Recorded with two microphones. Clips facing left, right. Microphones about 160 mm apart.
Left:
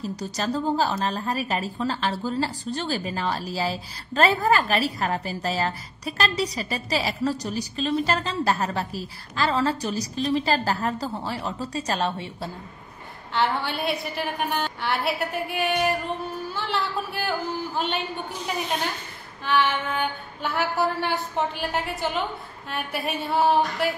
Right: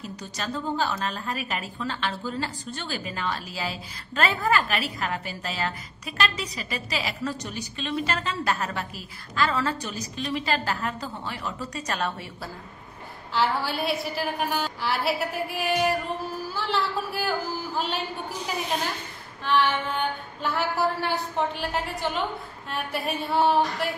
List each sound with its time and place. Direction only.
0.2 s a woman's voice: 35° left (ahead or behind)
13.3 s female singing: centre (ahead or behind)
16.5 s speech: centre (ahead or behind)
17.7 s female singing: centre (ahead or behind)
19.4 s female singing: centre (ahead or behind)